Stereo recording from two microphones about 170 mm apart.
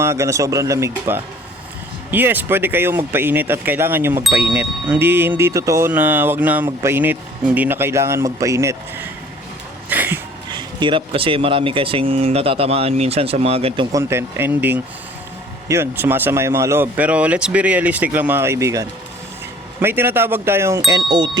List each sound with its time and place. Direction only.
0.0 s speech: 15° right (ahead or behind)
9.9 s a sound: 10° right (ahead or behind)
10.5 s speech: 25° right (ahead or behind)
13.9 s speech: 15° right (ahead or behind)